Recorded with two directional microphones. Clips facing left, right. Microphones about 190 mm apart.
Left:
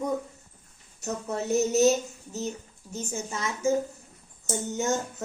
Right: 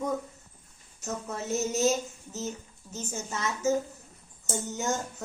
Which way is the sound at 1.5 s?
20° left (ahead or behind).